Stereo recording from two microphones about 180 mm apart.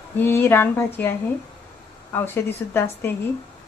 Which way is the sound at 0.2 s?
10° left (ahead or behind).